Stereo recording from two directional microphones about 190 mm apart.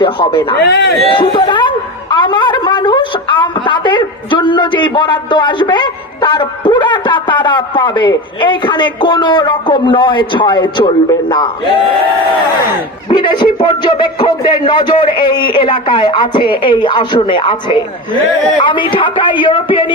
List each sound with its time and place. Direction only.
0.0 s a woman's voice: 25° left (ahead or behind)
0.6 s a man's voice: 60° left (ahead or behind)
1.1 s a woman's voice: 25° left (ahead or behind)
13.1 s a woman's voice: 25° left (ahead or behind)